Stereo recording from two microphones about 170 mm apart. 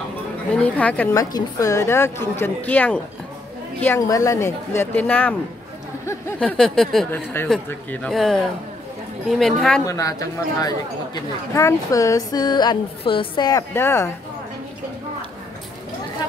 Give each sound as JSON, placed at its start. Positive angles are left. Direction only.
{"t": 0.6, "sound": "speech", "side_deg": 10}
{"t": 1.1, "sound": "speech", "side_deg": 20}
{"t": 6.4, "sound": "speech", "side_deg": 5}
{"t": 7.1, "sound": "speech", "side_deg": 10}
{"t": 9.8, "sound": "a woman's voice", "side_deg": 20}